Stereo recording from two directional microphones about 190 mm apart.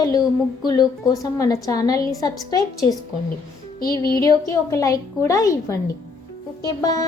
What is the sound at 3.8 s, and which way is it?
A woman's voice, 20° left (ahead or behind).